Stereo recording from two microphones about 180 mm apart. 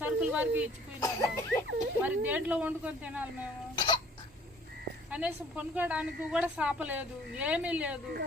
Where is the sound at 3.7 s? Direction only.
25° left (ahead or behind).